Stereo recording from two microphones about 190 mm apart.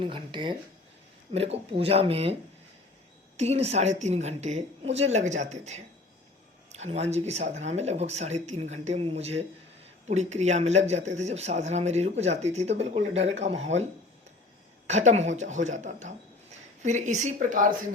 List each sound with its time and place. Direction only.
0.0 s speech: 25° right (ahead or behind)
3.3 s speech: 35° right (ahead or behind)
14.8 s speech: 35° right (ahead or behind)